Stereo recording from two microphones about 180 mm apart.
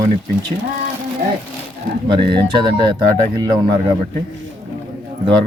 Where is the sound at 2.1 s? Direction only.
25° right (ahead or behind).